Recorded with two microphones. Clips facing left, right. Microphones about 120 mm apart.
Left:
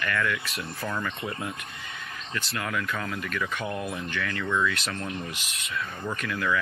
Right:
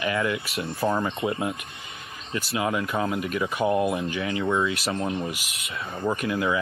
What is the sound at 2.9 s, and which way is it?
Speech, 30° right (ahead or behind).